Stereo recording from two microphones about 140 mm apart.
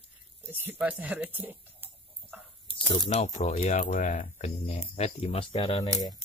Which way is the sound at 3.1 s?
50° left (ahead or behind).